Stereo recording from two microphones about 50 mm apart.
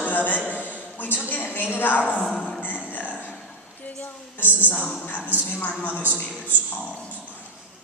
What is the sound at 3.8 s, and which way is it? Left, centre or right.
Speech, left.